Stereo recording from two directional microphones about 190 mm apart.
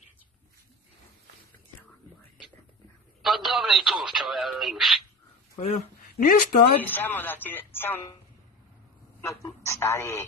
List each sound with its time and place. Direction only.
3.2 s speech: centre (ahead or behind)
5.6 s speech: 35° left (ahead or behind)
6.0 s speech: 50° left (ahead or behind)
6.8 s speech: 10° left (ahead or behind)
9.4 s speech: 15° left (ahead or behind)